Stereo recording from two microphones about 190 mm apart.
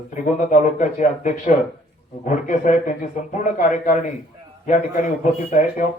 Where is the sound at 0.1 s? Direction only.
40° left (ahead or behind).